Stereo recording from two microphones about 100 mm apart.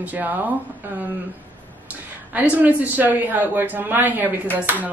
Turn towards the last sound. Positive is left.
turn(degrees=-15)  # may be behind; listen again after turning